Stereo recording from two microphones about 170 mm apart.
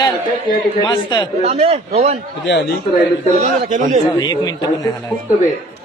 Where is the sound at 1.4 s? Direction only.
40° right (ahead or behind).